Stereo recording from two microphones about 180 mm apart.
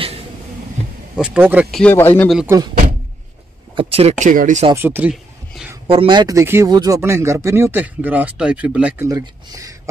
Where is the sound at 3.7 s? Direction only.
30° right (ahead or behind).